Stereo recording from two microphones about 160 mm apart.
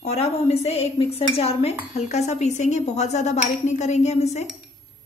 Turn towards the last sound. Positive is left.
turn(degrees=45)  # may be behind; listen again after turning